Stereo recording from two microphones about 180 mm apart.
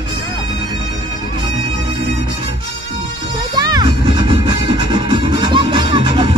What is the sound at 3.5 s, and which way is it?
Music, 25° right (ahead or behind).